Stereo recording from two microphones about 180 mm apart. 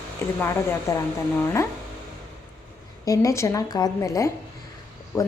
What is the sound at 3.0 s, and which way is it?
A woman's voice, 15° left (ahead or behind).